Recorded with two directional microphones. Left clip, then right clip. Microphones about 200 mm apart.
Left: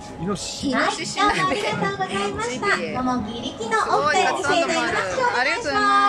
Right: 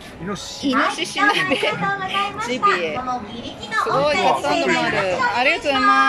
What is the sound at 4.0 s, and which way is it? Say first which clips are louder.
A woman's voice: right 2 dB; 15° right (ahead or behind).